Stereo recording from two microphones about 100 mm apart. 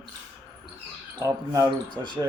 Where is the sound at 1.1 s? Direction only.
35° right (ahead or behind).